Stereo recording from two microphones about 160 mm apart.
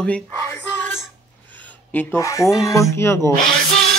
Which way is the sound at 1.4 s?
10° left (ahead or behind).